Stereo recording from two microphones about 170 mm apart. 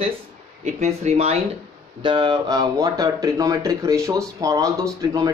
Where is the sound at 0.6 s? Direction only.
40° right (ahead or behind).